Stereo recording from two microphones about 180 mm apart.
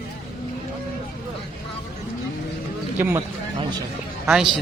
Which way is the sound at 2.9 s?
10° right (ahead or behind).